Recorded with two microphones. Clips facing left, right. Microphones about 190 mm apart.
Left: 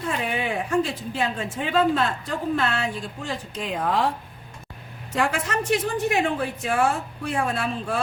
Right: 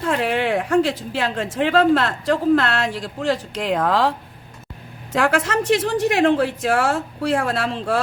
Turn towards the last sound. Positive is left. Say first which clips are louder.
# right 5 dB
turn(degrees=-90)